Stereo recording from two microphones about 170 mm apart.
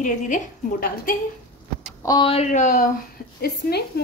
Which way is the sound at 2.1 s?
30° left (ahead or behind).